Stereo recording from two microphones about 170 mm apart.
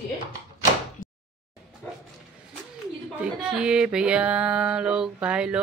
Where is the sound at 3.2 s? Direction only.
5° right (ahead or behind).